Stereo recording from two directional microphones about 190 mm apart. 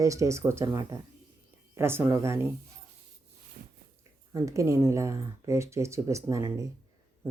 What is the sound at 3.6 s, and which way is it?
Biting, 50° right (ahead or behind).